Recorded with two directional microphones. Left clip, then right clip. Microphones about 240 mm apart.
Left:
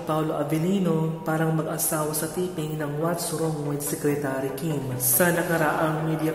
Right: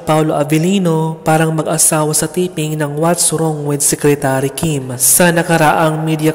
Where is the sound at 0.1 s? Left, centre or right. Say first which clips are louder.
Right 13 dB; right.